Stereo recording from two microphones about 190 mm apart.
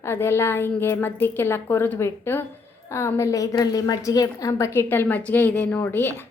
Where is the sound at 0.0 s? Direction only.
15° left (ahead or behind).